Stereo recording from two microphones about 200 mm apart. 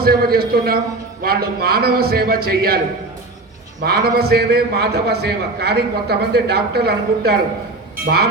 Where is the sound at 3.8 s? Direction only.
50° right (ahead or behind).